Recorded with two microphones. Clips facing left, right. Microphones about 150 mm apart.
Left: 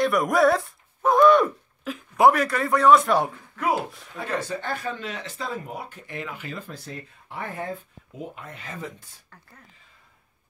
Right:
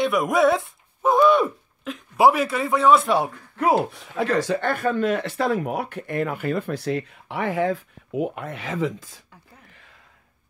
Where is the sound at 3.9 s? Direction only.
90° right.